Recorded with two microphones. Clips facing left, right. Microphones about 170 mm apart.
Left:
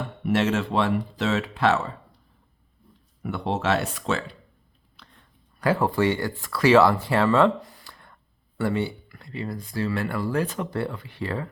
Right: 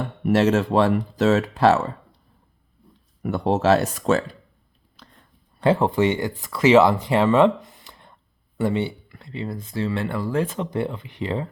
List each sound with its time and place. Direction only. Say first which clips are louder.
0.3 s speech: right 5 dB; 40° right (ahead or behind)
3.2 s speech: right 6 dB; 45° right (ahead or behind)
5.0 s a sound: right 4 dB; 40° right (ahead or behind)
5.5 s speech: right 3 dB; 25° right (ahead or behind)